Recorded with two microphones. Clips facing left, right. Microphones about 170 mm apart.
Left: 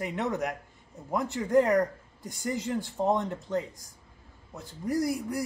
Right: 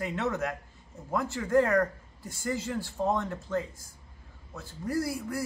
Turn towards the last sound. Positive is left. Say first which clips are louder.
# left 2 dB
turn(degrees=15)  # may be behind; listen again after turning